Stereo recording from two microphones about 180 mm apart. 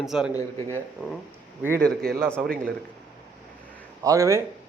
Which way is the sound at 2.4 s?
55° right (ahead or behind).